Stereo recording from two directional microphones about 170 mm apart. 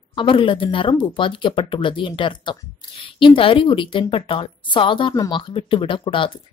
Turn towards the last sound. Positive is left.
turn(degrees=30)  # may be behind; listen again after turning